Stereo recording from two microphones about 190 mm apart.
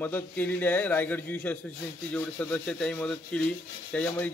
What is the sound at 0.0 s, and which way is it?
A man's voice, 10° left (ahead or behind).